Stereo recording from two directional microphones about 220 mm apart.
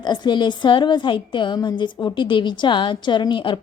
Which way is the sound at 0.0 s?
20° left (ahead or behind).